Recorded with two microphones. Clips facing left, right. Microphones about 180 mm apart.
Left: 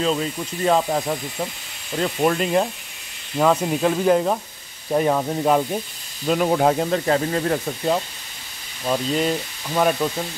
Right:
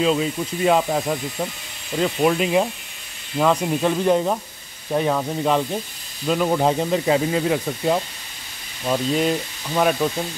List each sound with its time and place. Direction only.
0.0 s speech: 5° right (ahead or behind)